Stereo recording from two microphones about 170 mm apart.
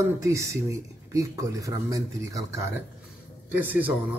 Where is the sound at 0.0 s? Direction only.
15° right (ahead or behind).